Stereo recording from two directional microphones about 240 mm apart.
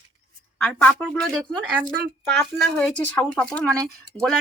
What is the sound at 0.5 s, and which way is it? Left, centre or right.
Speech, centre.